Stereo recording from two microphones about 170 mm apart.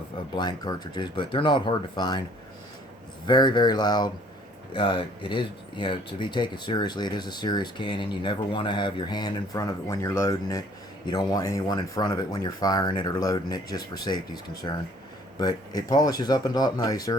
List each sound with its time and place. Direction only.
0.3 s speech: 25° left (ahead or behind)
3.2 s speech: 25° left (ahead or behind)